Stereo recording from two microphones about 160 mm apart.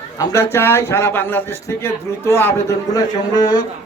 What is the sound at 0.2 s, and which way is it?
A man's voice, 20° left (ahead or behind).